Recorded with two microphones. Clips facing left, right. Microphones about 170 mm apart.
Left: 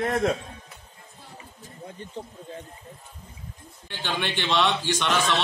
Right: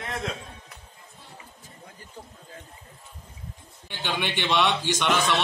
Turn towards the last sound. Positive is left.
turn(degrees=-15)  # may be behind; listen again after turning